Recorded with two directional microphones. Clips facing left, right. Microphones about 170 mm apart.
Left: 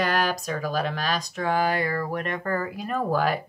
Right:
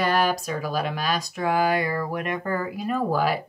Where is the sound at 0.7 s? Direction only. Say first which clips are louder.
Right 1 dB; 10° right (ahead or behind).